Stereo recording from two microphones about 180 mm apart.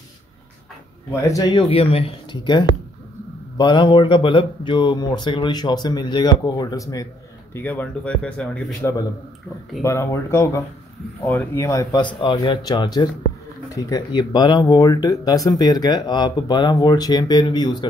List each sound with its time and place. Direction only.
1.2 s speech: 20° left (ahead or behind); by 8.9 s 5° left (ahead or behind)
9.8 s speech: 15° left (ahead or behind)